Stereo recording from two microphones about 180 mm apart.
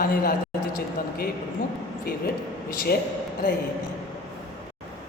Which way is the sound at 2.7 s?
55° left (ahead or behind).